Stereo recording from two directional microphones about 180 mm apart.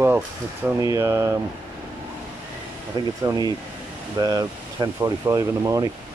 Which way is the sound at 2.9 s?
25° right (ahead or behind).